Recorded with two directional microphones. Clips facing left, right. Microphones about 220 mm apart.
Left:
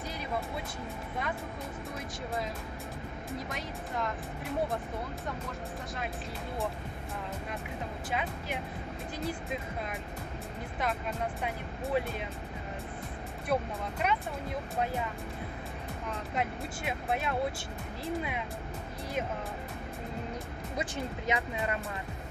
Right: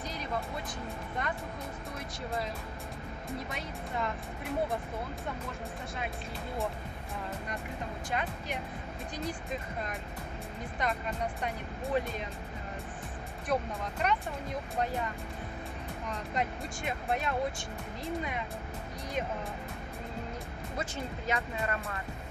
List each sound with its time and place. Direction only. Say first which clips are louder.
1.2 s speech: even; centre (ahead or behind)
3.4 s speech: left 1 dB; centre (ahead or behind)
8.1 s speech: even; 5° left (ahead or behind)
10.8 s speech: even; 5° left (ahead or behind)
13.5 s speech: left 1 dB; 5° left (ahead or behind)
16.3 s speech: even; 5° left (ahead or behind)
20.7 s speech: left 2 dB; 15° left (ahead or behind)